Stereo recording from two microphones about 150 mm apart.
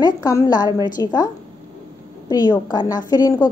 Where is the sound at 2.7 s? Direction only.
30° left (ahead or behind).